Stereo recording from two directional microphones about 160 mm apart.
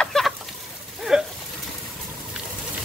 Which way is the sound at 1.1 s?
5° right (ahead or behind).